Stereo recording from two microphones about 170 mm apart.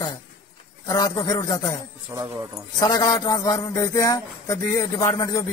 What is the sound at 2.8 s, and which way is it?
Speech, 20° left (ahead or behind).